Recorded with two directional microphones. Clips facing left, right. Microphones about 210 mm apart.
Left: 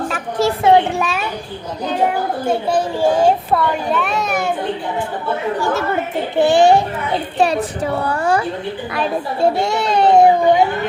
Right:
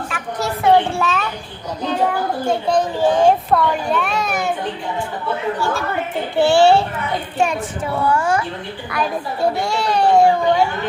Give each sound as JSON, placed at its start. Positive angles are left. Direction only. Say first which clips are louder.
{"t": 0.3, "sound": "a sound", "louder": "left 2 dB", "side_deg": 25}
{"t": 2.6, "sound": "a child's voice", "louder": "right 1 dB", "side_deg": 5}
{"t": 5.5, "sound": "a child's voice", "louder": "left 3 dB", "side_deg": 15}
{"t": 7.3, "sound": "a woman's voice", "louder": "left 3 dB", "side_deg": 35}
{"t": 8.9, "sound": "speech", "louder": "even", "side_deg": 25}